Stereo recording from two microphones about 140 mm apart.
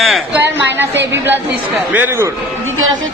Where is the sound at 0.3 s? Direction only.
15° right (ahead or behind).